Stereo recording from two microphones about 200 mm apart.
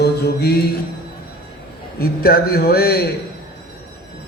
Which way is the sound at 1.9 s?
50° left (ahead or behind).